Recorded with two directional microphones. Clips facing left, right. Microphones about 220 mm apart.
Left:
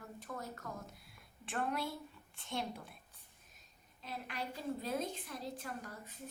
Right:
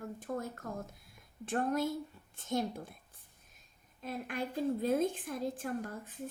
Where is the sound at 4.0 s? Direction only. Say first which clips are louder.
Right 6 dB; 50° right (ahead or behind).